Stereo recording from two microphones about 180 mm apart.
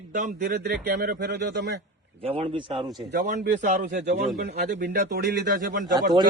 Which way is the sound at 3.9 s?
65° right (ahead or behind).